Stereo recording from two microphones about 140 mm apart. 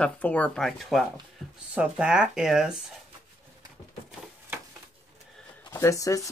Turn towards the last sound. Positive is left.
turn(degrees=25)  # may be behind; listen again after turning